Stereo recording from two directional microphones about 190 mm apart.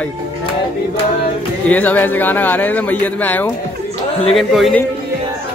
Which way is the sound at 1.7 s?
10° left (ahead or behind).